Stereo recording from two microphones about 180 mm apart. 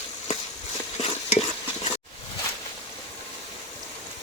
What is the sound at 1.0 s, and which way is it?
Stir, 35° left (ahead or behind).